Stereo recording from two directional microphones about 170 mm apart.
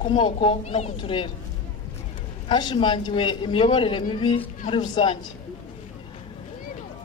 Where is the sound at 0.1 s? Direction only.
30° left (ahead or behind).